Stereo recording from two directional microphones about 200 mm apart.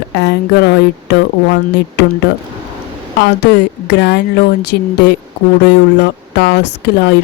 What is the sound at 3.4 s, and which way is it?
Speech, 60° left (ahead or behind).